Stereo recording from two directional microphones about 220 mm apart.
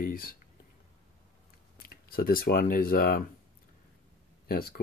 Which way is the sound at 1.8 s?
40° left (ahead or behind).